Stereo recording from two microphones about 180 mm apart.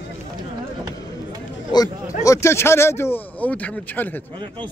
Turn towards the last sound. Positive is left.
turn(degrees=10)  # may be behind; listen again after turning